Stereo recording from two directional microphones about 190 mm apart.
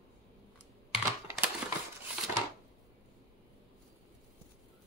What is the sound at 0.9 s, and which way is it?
Typing, 10° right (ahead or behind).